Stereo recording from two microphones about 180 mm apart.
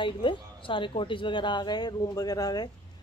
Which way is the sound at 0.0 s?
25° left (ahead or behind).